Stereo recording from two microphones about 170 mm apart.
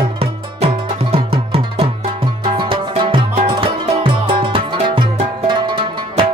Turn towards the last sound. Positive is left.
turn(degrees=-30)  # may be behind; listen again after turning